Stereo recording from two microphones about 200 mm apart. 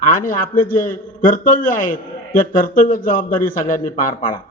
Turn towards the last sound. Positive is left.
turn(degrees=40)  # may be behind; listen again after turning